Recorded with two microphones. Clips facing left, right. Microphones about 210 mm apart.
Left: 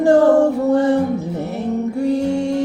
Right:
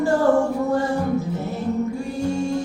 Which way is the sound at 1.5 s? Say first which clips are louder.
Left 2 dB; 65° left (ahead or behind).